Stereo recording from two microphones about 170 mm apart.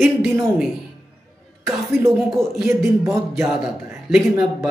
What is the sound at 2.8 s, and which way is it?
Beatboxing, 15° right (ahead or behind).